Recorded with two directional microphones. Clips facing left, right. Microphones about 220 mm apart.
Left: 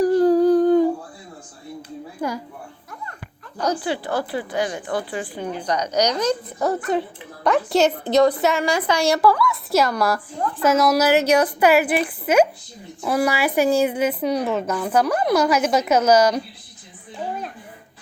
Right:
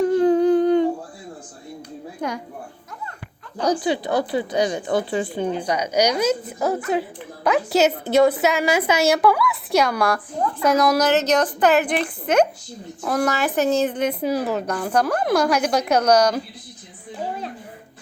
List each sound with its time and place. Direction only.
0.0 s humming: centre (ahead or behind)
2.2 s a sound: 5° left (ahead or behind)
3.6 s speech: 15° right (ahead or behind)
5.6 s a woman's voice: 10° right (ahead or behind)